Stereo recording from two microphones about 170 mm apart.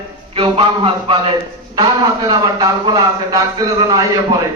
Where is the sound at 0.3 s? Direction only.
30° right (ahead or behind).